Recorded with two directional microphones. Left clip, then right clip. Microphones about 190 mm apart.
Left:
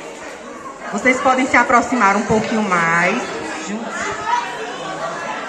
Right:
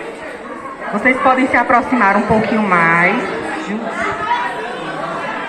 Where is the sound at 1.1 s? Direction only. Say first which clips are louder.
Right 2 dB; 65° left (ahead or behind).